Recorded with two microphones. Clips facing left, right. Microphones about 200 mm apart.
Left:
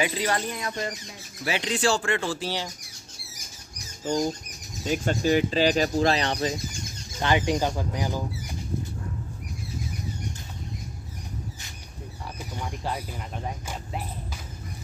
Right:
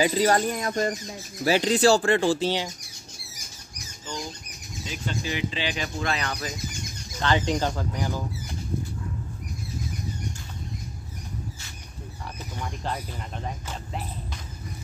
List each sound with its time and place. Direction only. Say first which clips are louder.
0.0 s speech: right 5 dB; 40° right (ahead or behind); by 2.7 s 20° right (ahead or behind)
4.0 s speech: left 10 dB; 45° left (ahead or behind)
7.2 s speech: left 1 dB; 15° left (ahead or behind)
12.4 s speech: left 1 dB; 10° left (ahead or behind)